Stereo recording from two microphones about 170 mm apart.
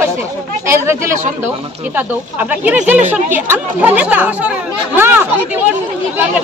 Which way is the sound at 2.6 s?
10° right (ahead or behind).